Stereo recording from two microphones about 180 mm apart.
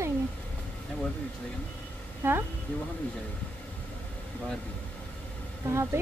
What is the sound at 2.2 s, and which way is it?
Speech, 10° right (ahead or behind).